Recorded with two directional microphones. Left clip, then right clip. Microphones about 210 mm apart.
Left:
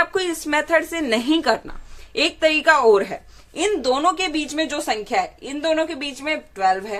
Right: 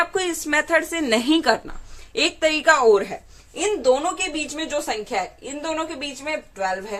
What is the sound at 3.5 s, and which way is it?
A woman's voice, 50° left (ahead or behind).